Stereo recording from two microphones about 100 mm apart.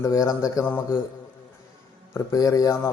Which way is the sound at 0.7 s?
20° left (ahead or behind).